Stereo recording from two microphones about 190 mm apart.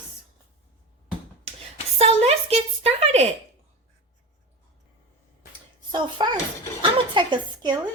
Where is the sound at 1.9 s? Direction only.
35° right (ahead or behind).